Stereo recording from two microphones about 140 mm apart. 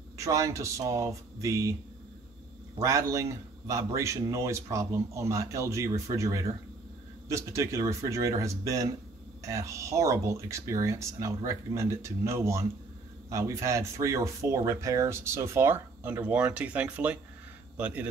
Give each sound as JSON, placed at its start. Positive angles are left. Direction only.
{"t": 0.2, "sound": "a man's voice", "side_deg": -25}
{"t": 2.8, "sound": "a man's voice", "side_deg": -25}